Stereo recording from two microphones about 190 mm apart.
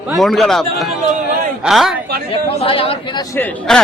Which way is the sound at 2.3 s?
30° left (ahead or behind).